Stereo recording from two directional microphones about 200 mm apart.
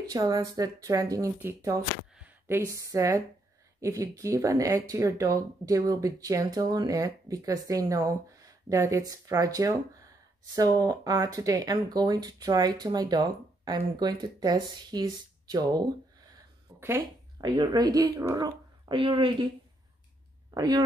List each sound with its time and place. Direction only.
0.1 s speech: 15° right (ahead or behind)
20.5 s speech: 20° right (ahead or behind)